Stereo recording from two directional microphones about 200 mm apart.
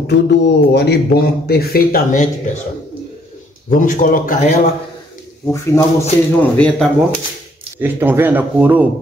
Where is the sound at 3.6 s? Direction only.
40° left (ahead or behind).